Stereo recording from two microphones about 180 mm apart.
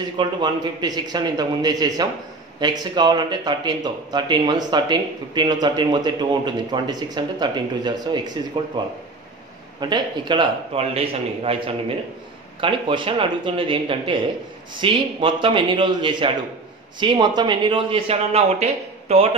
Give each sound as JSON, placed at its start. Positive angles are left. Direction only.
{"t": 0.2, "sound": "speech", "side_deg": -25}
{"t": 9.8, "sound": "speech", "side_deg": -25}